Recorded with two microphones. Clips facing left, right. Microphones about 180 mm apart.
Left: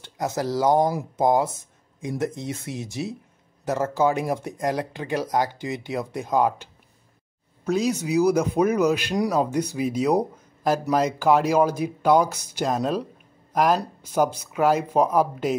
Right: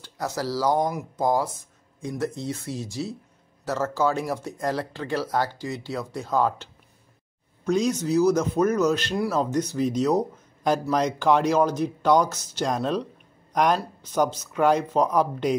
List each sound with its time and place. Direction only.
0.0 s speech: 20° left (ahead or behind)